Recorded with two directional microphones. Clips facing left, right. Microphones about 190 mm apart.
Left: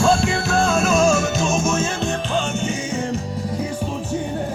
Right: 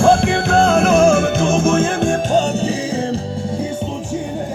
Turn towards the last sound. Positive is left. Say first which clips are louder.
# right 3 dB
turn(degrees=-25)  # may be behind; listen again after turning